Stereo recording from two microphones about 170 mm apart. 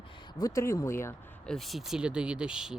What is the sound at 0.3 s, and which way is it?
Speech, 20° left (ahead or behind).